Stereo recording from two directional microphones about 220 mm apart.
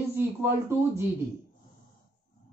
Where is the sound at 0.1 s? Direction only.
10° right (ahead or behind).